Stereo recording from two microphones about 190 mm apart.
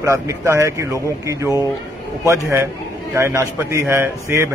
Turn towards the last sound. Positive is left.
turn(degrees=-15)  # may be behind; listen again after turning